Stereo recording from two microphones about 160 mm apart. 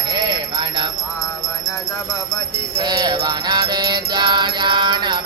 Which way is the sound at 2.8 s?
25° right (ahead or behind).